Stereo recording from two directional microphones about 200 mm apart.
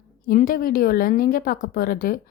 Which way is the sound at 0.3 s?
45° left (ahead or behind).